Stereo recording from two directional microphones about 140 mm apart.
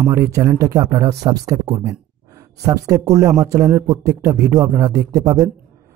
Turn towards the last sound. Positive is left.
turn(degrees=-25)  # may be behind; listen again after turning